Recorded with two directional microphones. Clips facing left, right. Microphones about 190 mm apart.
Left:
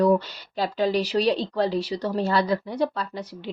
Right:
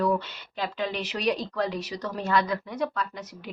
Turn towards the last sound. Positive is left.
turn(degrees=30)  # may be behind; listen again after turning